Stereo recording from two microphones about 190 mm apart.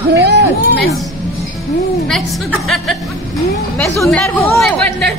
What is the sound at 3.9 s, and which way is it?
Speech, 15° left (ahead or behind).